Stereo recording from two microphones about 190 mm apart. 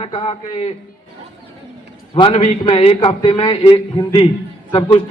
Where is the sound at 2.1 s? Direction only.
30° left (ahead or behind).